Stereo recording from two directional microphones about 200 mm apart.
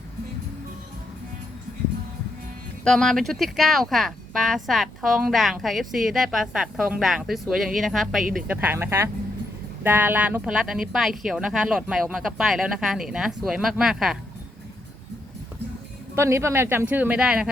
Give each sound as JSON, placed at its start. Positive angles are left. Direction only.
{"t": 2.8, "sound": "speech", "side_deg": 5}
{"t": 8.2, "sound": "speech", "side_deg": -45}
{"t": 8.4, "sound": "speech", "side_deg": -10}
{"t": 16.1, "sound": "speech", "side_deg": -15}